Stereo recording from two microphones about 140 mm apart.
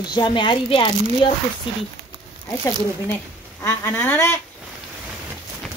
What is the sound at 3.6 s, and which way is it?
Speech, 15° left (ahead or behind).